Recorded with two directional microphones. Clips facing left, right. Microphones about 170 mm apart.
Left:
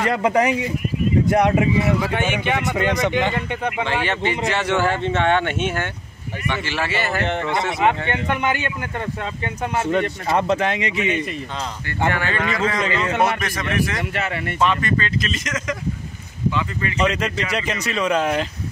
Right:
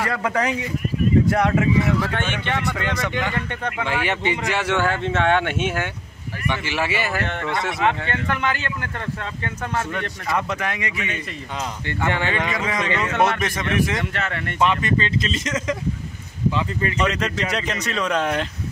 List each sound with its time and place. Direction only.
0.0 s speech: 20° left (ahead or behind)
4.0 s a man's voice: 15° right (ahead or behind)
4.7 s a man's voice: 5° left (ahead or behind); by 7.2 s 10° right (ahead or behind)
7.2 s speech: 20° left (ahead or behind)
12.1 s a man's voice: 20° right (ahead or behind)
14.1 s speech: 10° left (ahead or behind)
14.6 s speech: 20° right (ahead or behind)
17.0 s speech: centre (ahead or behind)